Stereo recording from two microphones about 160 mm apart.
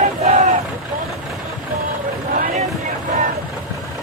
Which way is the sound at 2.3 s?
55° right (ahead or behind).